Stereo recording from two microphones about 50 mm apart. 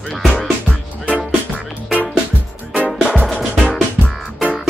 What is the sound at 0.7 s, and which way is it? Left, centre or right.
Music, right.